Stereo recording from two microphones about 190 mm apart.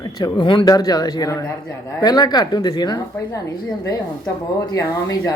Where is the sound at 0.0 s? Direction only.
20° left (ahead or behind).